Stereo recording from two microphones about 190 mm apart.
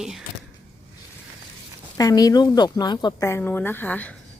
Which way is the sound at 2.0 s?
20° left (ahead or behind).